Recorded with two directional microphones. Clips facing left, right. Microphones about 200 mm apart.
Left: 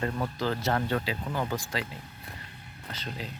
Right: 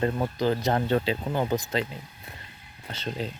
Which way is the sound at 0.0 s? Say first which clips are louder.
Right 5 dB; 20° right (ahead or behind).